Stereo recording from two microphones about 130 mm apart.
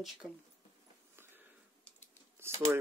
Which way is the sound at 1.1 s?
20° right (ahead or behind).